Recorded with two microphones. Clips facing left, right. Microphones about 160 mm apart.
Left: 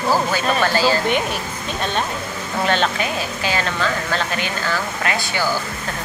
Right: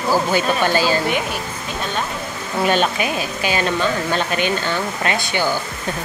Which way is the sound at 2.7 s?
10° right (ahead or behind).